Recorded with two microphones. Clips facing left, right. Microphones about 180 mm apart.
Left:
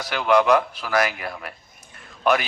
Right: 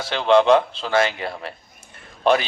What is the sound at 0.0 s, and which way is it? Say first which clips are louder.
Speech: right 3 dB; 25° right (ahead or behind).